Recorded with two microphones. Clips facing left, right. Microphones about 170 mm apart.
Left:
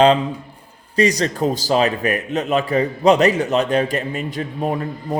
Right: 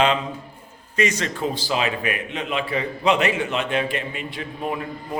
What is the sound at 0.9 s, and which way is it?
A man's voice, 35° left (ahead or behind).